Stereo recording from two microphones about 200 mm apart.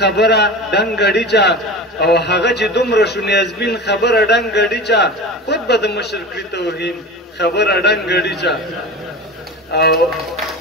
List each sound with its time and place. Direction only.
0.0 s a man's voice: 55° left (ahead or behind)
9.7 s speech: 55° left (ahead or behind)